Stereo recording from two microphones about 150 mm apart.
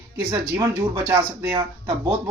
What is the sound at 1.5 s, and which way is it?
Speech, 30° right (ahead or behind).